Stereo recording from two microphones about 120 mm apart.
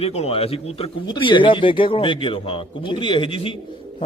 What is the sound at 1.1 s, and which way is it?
Speech, 45° left (ahead or behind).